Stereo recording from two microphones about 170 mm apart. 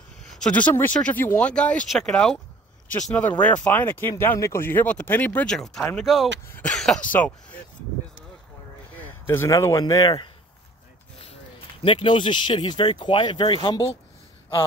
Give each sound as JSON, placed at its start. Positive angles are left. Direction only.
{"t": 0.3, "sound": "speech", "side_deg": 5}
{"t": 6.4, "sound": "speech", "side_deg": 10}
{"t": 8.9, "sound": "speech", "side_deg": 10}
{"t": 11.8, "sound": "speech", "side_deg": 30}